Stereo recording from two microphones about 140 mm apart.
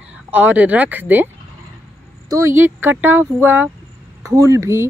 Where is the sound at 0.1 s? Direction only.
10° right (ahead or behind).